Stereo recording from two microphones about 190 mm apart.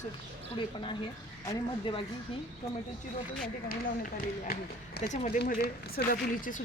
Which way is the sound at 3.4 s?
50° left (ahead or behind).